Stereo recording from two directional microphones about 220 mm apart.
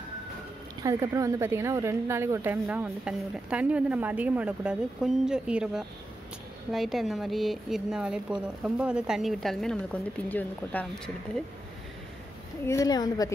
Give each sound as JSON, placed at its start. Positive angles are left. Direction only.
{"t": 0.8, "sound": "a woman's voice", "side_deg": -15}
{"t": 12.6, "sound": "speech", "side_deg": 15}